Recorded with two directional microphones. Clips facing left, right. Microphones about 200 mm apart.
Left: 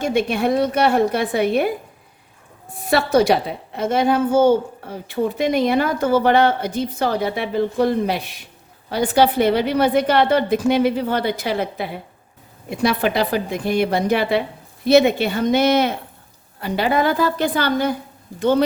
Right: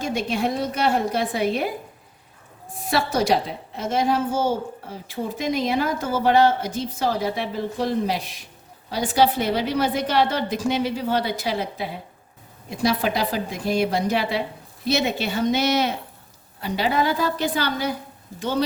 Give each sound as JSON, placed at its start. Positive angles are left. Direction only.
{"t": 0.0, "sound": "a woman's voice", "side_deg": 60}
{"t": 2.9, "sound": "a woman's voice", "side_deg": 60}